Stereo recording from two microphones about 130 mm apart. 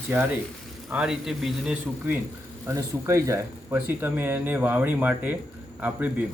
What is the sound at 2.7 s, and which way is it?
Speech, 25° right (ahead or behind).